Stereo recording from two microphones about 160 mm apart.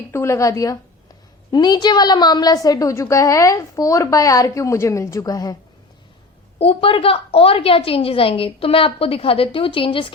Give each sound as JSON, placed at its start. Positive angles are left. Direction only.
{"t": 0.1, "sound": "a woman's voice", "side_deg": 15}
{"t": 6.6, "sound": "a woman's voice", "side_deg": 35}